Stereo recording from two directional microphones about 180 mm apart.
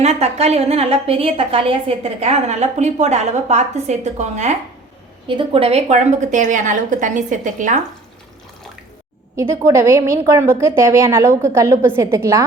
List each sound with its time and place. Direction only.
0.0 s a woman's voice: 35° right (ahead or behind)
5.3 s a woman's voice: 30° right (ahead or behind); by 7.8 s 45° right (ahead or behind)
9.3 s a woman's voice: 15° right (ahead or behind)